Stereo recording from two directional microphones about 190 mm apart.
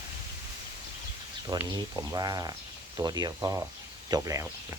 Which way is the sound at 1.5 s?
15° right (ahead or behind).